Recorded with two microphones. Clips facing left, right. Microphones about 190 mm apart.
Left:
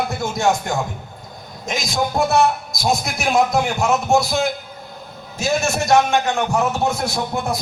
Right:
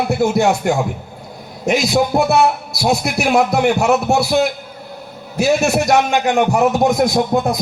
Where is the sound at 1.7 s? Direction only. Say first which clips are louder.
Right 7 dB; 65° right (ahead or behind).